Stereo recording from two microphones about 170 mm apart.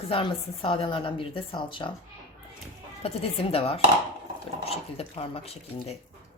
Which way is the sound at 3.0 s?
35° left (ahead or behind).